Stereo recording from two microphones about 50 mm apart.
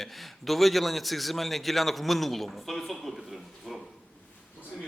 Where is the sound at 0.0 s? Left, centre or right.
Centre.